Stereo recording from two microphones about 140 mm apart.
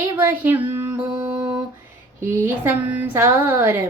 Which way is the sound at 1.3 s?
30° right (ahead or behind).